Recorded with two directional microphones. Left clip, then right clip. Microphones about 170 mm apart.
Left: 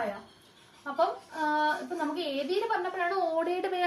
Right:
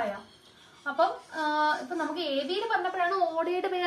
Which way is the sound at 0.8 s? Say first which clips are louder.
Right 2 dB; 15° left (ahead or behind).